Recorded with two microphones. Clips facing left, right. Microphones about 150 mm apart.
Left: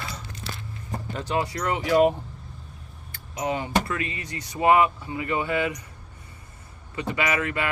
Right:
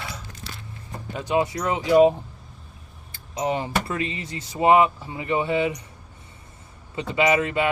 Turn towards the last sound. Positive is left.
turn(degrees=-25)  # may be behind; listen again after turning